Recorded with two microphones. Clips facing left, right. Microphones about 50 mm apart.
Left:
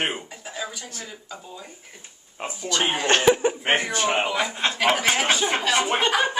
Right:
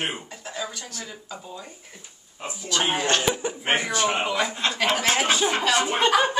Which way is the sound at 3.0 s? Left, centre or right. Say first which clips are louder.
Left 5 dB; left.